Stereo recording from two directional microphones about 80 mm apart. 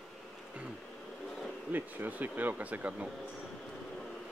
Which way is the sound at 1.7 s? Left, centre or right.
Right.